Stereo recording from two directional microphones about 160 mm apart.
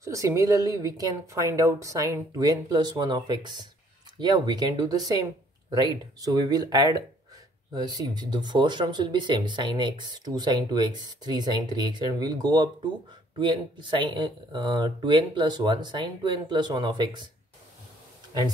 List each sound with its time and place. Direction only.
0.0 s speech: 20° right (ahead or behind)